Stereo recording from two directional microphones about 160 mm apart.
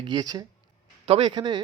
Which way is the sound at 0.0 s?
25° right (ahead or behind).